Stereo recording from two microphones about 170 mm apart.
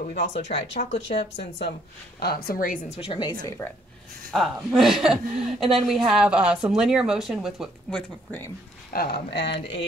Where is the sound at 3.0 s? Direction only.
25° left (ahead or behind).